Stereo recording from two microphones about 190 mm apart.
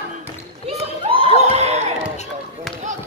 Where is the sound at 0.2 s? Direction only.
30° right (ahead or behind).